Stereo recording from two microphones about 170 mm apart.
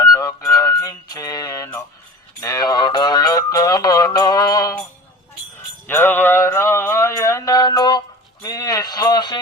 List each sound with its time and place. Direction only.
0.0 s music: 20° left (ahead or behind)
5.9 s mantra: 10° left (ahead or behind)